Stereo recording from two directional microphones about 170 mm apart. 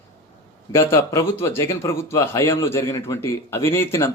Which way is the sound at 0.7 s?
15° left (ahead or behind).